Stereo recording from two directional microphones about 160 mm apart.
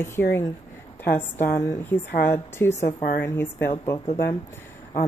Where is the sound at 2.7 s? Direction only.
45° left (ahead or behind).